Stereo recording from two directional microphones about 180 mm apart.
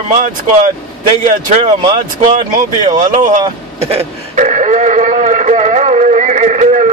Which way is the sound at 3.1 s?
45° right (ahead or behind).